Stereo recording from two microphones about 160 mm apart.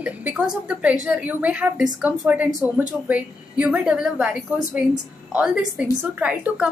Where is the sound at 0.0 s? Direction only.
10° right (ahead or behind).